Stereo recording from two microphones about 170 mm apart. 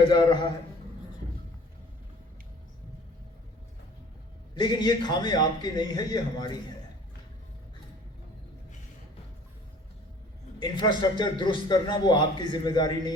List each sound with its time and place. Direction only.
0.1 s a man's voice: 25° left (ahead or behind)
4.5 s a man's voice: 25° left (ahead or behind)
10.6 s a man's voice: 25° left (ahead or behind)